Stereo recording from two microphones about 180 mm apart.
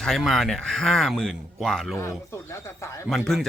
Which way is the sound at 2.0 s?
15° left (ahead or behind).